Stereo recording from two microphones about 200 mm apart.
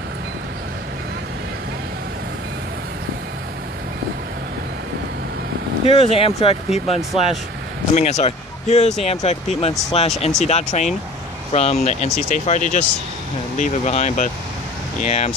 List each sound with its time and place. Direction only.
5.9 s speech: 30° left (ahead or behind)